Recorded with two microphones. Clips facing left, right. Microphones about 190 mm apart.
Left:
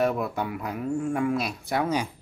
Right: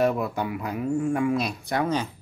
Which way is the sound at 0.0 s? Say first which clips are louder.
Right 2 dB; centre (ahead or behind).